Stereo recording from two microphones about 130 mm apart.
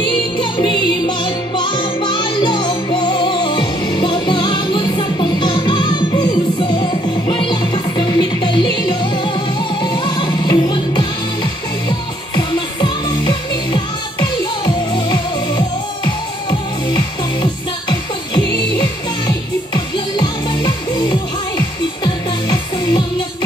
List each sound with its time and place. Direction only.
0.4 s music: 35° left (ahead or behind)
12.4 s music: 35° left (ahead or behind)